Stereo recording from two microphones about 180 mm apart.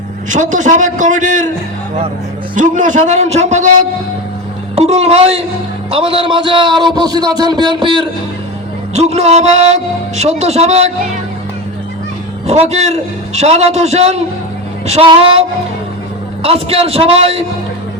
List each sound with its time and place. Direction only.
0.3 s a man's voice: 45° right (ahead or behind)
2.6 s a man's voice: 45° right (ahead or behind); by 8.0 s 25° right (ahead or behind)
9.0 s a man's voice: 35° right (ahead or behind)
12.5 s a man's voice: 35° right (ahead or behind)